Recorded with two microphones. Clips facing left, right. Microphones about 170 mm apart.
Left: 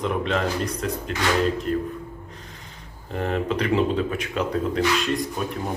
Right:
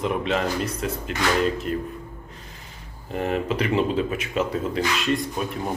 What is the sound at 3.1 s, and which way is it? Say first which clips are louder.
Speech: even; 5° right (ahead or behind).